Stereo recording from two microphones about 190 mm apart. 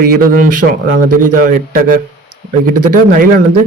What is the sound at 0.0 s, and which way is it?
A man's voice, 45° right (ahead or behind).